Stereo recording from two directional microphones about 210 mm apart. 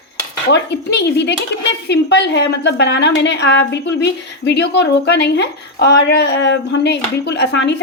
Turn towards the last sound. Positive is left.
turn(degrees=55)  # may be behind; listen again after turning